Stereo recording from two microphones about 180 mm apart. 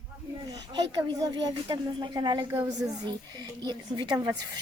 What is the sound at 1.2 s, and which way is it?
A woman's voice, 25° right (ahead or behind).